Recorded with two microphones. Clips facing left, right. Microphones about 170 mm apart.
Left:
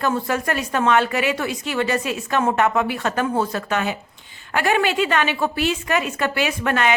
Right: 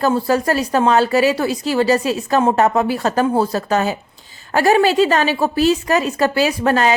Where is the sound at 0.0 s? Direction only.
35° right (ahead or behind).